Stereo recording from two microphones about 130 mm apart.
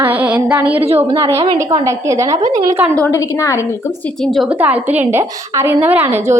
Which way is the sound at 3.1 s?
25° left (ahead or behind).